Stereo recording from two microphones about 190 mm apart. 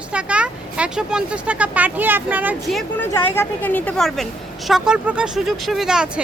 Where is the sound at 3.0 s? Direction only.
10° left (ahead or behind).